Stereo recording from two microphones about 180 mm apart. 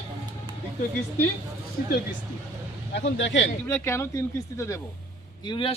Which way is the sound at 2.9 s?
85° left.